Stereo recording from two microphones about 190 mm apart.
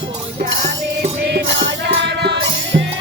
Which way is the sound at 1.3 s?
70° right (ahead or behind).